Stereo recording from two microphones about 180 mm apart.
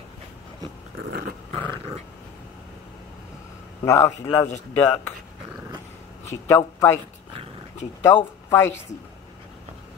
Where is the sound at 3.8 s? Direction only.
15° left (ahead or behind).